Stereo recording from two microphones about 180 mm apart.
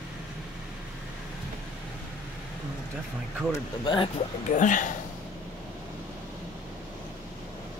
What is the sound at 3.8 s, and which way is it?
Speech, 25° left (ahead or behind).